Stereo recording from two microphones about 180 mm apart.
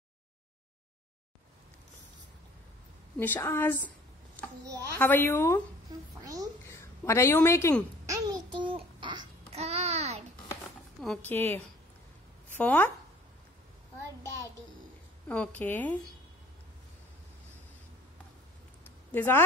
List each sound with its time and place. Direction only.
3.2 s a woman's voice: 15° left (ahead or behind)
4.9 s a woman's voice: 10° left (ahead or behind)
6.2 s a sound: 20° right (ahead or behind)
6.7 s a woman's voice: 15° left (ahead or behind)
8.1 s babbling: 25° right (ahead or behind)
9.5 s babbling: 35° right (ahead or behind)
11.2 s a woman's voice: 10° left (ahead or behind)
15.2 s a woman's voice: 5° left (ahead or behind)
19.1 s a woman's voice: 10° left (ahead or behind)